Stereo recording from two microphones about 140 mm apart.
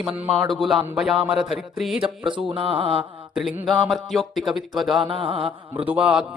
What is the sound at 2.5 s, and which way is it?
Mantra, 40° right (ahead or behind).